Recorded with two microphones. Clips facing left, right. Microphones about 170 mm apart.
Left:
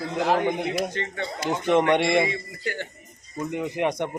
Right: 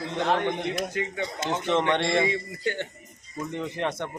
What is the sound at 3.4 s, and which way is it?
Speech, 15° left (ahead or behind).